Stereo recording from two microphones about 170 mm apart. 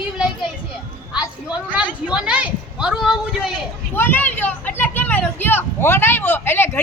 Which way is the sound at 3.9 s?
10° left (ahead or behind).